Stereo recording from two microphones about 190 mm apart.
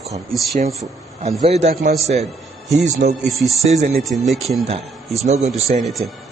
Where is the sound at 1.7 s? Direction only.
55° right (ahead or behind).